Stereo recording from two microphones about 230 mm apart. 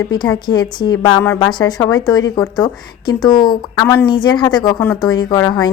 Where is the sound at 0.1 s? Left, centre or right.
Centre.